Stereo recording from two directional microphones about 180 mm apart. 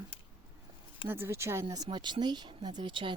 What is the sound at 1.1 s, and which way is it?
Speech, 15° right (ahead or behind).